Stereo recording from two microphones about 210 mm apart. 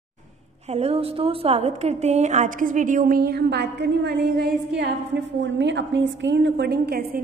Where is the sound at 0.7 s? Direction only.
30° right (ahead or behind).